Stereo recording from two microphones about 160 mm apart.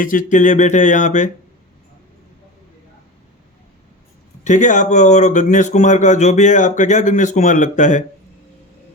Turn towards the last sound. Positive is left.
turn(degrees=50)  # may be behind; listen again after turning